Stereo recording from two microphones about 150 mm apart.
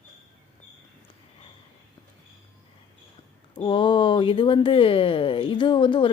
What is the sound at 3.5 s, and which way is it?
Speech, 35° left (ahead or behind).